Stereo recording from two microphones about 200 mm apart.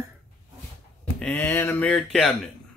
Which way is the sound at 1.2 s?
10° left (ahead or behind).